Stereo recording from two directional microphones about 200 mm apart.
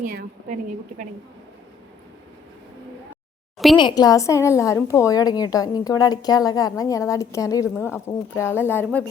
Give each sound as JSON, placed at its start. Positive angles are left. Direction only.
{"t": 0.0, "sound": "a woman's voice", "side_deg": -45}
{"t": 3.8, "sound": "a woman's voice", "side_deg": 20}